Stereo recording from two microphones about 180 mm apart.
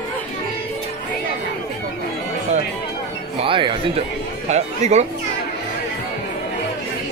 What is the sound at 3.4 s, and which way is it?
Speech, 30° right (ahead or behind).